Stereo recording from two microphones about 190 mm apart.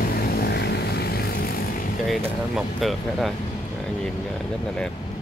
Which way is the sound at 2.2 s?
Centre (ahead or behind).